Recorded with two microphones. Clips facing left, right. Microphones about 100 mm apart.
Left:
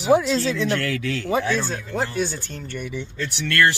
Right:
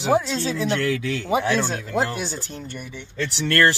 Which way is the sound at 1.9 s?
90° right.